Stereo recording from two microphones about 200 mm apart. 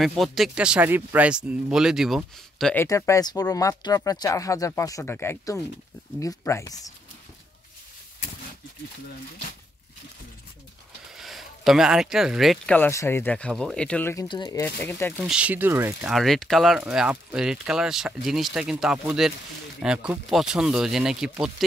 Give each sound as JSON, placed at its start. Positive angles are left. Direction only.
{"t": 0.0, "sound": "speech", "side_deg": 0}
{"t": 2.7, "sound": "speech", "side_deg": 10}
{"t": 11.1, "sound": "speech", "side_deg": 0}
{"t": 14.2, "sound": "speech", "side_deg": 20}
{"t": 15.1, "sound": "speech", "side_deg": -5}